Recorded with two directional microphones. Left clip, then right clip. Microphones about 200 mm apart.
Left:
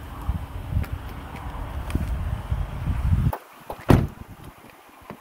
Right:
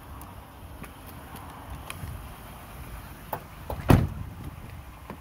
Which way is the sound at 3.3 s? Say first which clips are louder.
Right 2 dB; 35° right (ahead or behind).